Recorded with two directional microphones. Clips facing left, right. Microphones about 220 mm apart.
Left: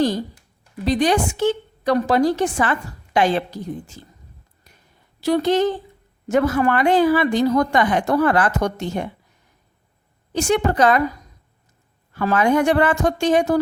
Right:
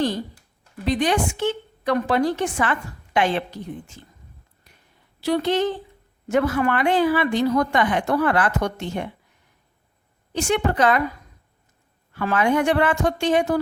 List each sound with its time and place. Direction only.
0.9 s a woman's voice: 35° left (ahead or behind)
5.2 s a woman's voice: 45° left (ahead or behind)
10.3 s a woman's voice: 40° left (ahead or behind)
12.1 s a woman's voice: 40° left (ahead or behind)